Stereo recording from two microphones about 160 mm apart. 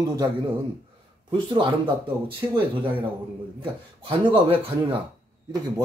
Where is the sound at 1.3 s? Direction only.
30° right (ahead or behind).